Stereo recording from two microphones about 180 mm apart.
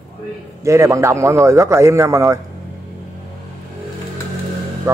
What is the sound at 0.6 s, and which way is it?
Speech, 15° right (ahead or behind).